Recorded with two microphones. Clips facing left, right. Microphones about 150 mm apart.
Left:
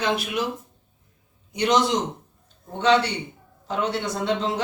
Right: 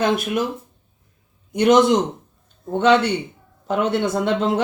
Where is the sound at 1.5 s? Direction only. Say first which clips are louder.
Right 7 dB; 55° right (ahead or behind).